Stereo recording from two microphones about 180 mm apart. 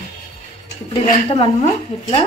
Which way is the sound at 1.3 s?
35° left (ahead or behind).